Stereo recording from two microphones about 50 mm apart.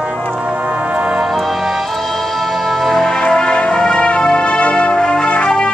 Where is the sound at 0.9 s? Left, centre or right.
Right.